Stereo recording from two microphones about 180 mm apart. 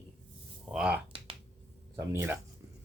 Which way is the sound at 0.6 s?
5° right (ahead or behind).